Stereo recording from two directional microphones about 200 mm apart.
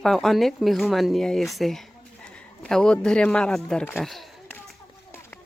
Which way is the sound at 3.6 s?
5° left (ahead or behind).